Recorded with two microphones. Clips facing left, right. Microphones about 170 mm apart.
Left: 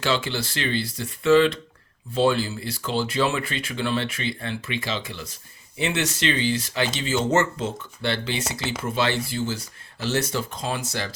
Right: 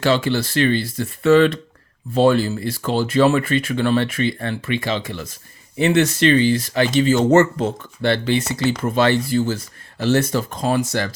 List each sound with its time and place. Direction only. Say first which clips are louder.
0.0 s speech: right 7 dB; 55° right (ahead or behind)